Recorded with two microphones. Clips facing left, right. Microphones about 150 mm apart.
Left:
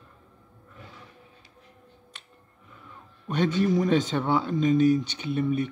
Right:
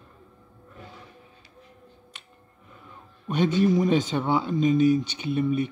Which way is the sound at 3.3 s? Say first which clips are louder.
Right 2 dB; 5° right (ahead or behind).